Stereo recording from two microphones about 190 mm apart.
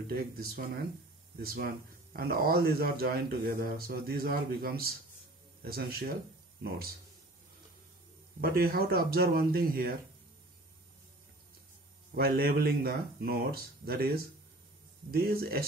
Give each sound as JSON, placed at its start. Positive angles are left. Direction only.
{"t": 0.1, "sound": "speech", "side_deg": -50}
{"t": 8.4, "sound": "speech", "side_deg": -50}
{"t": 12.2, "sound": "speech", "side_deg": -50}